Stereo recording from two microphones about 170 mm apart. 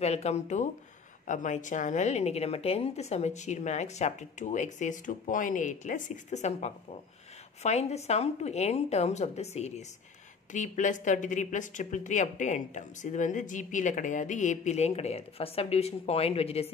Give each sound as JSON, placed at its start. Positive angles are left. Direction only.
{"t": 0.0, "sound": "a woman's voice", "side_deg": 40}